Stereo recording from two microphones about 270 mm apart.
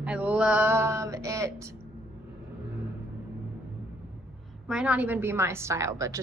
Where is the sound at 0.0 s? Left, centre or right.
Centre.